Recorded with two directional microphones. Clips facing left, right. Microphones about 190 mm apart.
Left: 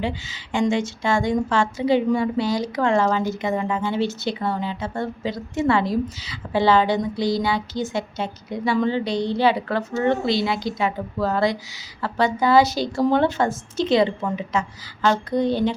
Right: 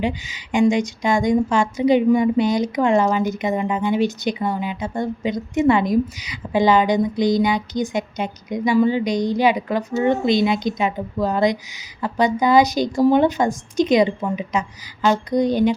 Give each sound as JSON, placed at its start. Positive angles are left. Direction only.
{"t": 0.0, "sound": "a woman's voice", "side_deg": -15}